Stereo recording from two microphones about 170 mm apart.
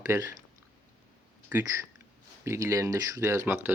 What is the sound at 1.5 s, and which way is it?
Speech, 10° right (ahead or behind).